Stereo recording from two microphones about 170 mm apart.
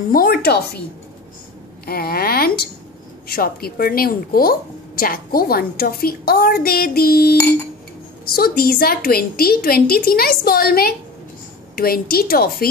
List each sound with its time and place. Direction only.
0.1 s a woman's voice: 65° left (ahead or behind)
1.9 s a woman's voice: 65° left (ahead or behind)